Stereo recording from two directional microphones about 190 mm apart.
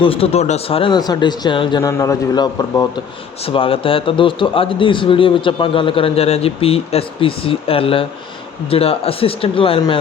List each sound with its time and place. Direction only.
0.0 s a man's voice: 30° left (ahead or behind)